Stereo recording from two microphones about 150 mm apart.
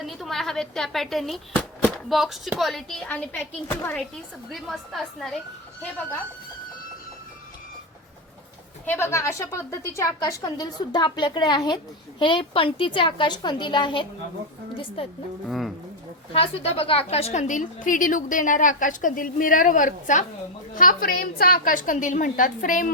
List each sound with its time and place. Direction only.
0.0 s a woman's voice: centre (ahead or behind)
4.5 s speech: centre (ahead or behind)
8.9 s a woman's voice: 20° left (ahead or behind)
15.4 s speech: centre (ahead or behind)
16.3 s a woman's voice: 40° left (ahead or behind); by 20.2 s 60° left (ahead or behind)
20.7 s a woman's voice: 70° left (ahead or behind)